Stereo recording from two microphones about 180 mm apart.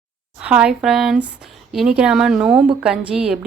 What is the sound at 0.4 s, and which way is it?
A woman's voice, 5° right (ahead or behind).